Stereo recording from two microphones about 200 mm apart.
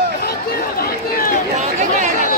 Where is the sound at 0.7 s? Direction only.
45° left (ahead or behind).